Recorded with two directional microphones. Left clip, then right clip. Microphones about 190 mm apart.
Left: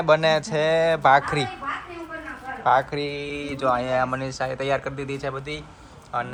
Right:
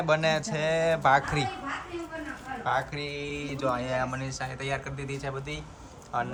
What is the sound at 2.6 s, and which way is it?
Speech, 5° right (ahead or behind).